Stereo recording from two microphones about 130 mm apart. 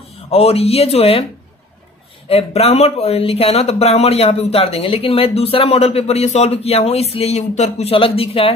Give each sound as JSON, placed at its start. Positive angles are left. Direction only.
{"t": 0.3, "sound": "speech", "side_deg": 50}
{"t": 2.2, "sound": "speech", "side_deg": 50}